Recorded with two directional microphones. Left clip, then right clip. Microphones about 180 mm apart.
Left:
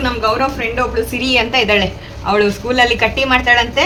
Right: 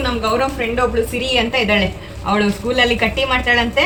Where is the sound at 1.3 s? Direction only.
15° left (ahead or behind).